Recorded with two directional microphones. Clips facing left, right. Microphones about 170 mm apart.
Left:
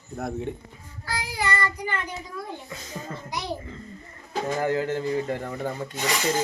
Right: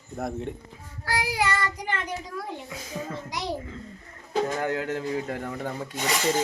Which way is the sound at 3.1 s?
90° right.